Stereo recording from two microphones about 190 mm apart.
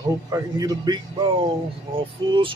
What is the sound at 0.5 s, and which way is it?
Speech, 20° right (ahead or behind).